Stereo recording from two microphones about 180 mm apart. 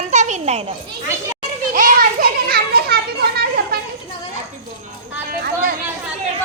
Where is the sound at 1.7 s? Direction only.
45° right (ahead or behind).